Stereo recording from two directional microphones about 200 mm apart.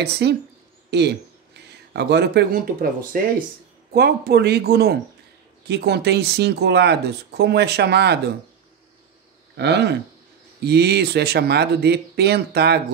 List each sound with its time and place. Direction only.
0.0 s speech: 55° right (ahead or behind)
3.9 s speech: 55° right (ahead or behind)
9.6 s speech: 55° right (ahead or behind)